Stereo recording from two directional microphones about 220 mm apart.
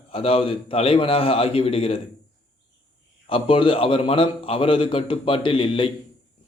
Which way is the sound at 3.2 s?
25° left (ahead or behind).